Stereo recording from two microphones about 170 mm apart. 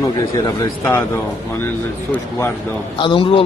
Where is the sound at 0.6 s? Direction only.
15° left (ahead or behind).